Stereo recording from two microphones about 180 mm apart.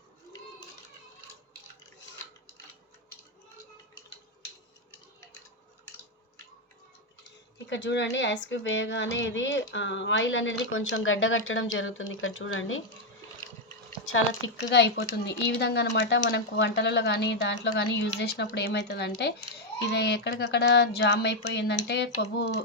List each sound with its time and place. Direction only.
7.7 s speech: 85° left
14.0 s speech: 90° left
14.7 s speech: 75° left (ahead or behind)